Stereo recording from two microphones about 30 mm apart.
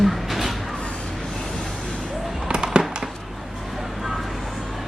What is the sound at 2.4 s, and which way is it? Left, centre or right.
Fireworks, right.